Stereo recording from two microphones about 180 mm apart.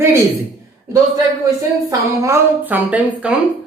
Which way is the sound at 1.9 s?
15° right (ahead or behind).